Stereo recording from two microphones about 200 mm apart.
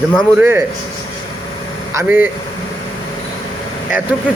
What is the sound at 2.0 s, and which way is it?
Speech, 10° right (ahead or behind).